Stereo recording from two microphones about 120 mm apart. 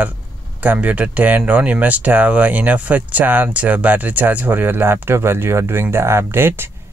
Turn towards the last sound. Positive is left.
turn(degrees=-20)  # may be behind; listen again after turning